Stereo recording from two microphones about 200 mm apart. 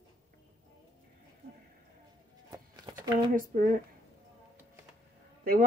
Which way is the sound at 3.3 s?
40° right (ahead or behind).